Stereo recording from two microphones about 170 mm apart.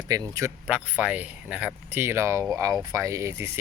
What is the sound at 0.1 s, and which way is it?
Speech, 20° right (ahead or behind).